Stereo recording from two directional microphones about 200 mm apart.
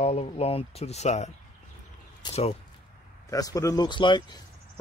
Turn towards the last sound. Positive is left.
turn(degrees=25)  # may be behind; listen again after turning